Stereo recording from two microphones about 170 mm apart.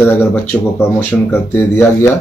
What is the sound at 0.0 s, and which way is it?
Speech, 15° left (ahead or behind).